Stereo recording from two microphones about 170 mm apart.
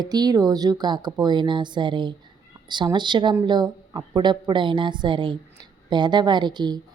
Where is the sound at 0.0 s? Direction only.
25° right (ahead or behind).